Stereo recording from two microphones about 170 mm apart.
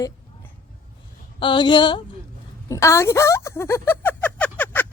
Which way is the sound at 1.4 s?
30° left (ahead or behind).